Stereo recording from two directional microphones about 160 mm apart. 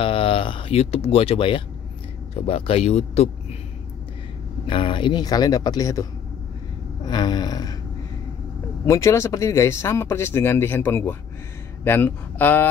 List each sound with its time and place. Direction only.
0.0 s speech: 35° left (ahead or behind)
4.6 s speech: 30° left (ahead or behind)
7.1 s speech: 25° left (ahead or behind)
8.8 s speech: 20° left (ahead or behind)